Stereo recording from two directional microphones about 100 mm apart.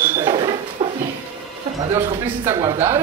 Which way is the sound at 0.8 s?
60° right (ahead or behind).